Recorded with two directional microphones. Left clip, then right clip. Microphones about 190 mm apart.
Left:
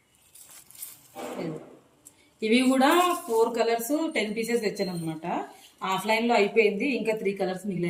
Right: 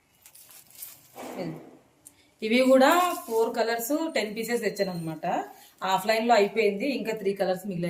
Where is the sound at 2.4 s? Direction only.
15° right (ahead or behind).